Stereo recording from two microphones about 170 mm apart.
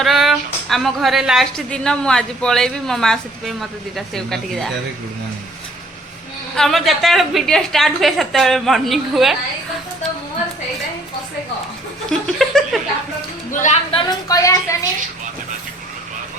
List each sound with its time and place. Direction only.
0.0 s a woman's voice: centre (ahead or behind)
6.6 s a woman's voice: centre (ahead or behind)
12.1 s a sound: centre (ahead or behind)
13.5 s music: 50° left (ahead or behind)
13.9 s a woman's voice: 20° left (ahead or behind)